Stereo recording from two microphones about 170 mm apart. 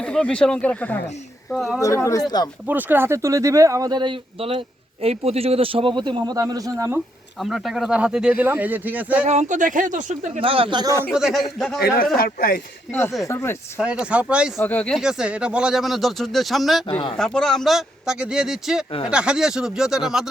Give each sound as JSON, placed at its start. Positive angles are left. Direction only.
{"t": 0.0, "sound": "speech", "side_deg": 5}
{"t": 2.3, "sound": "speech", "side_deg": 25}
{"t": 2.6, "sound": "speech", "side_deg": -10}
{"t": 7.4, "sound": "speech", "side_deg": 0}
{"t": 9.2, "sound": "speech", "side_deg": -40}
{"t": 10.4, "sound": "speech", "side_deg": -30}
{"t": 11.1, "sound": "speech", "side_deg": -5}
{"t": 12.1, "sound": "speech", "side_deg": 60}
{"t": 13.2, "sound": "speech", "side_deg": 15}
{"t": 13.7, "sound": "speech", "side_deg": -5}
{"t": 14.6, "sound": "speech", "side_deg": 10}